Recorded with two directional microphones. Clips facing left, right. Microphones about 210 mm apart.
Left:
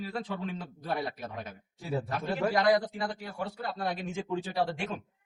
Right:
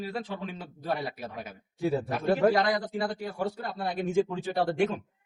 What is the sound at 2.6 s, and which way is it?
Speech, 30° right (ahead or behind).